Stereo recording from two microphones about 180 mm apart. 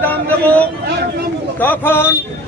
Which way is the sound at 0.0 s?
10° left (ahead or behind).